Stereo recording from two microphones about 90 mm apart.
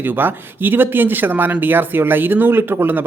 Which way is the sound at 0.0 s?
20° right (ahead or behind).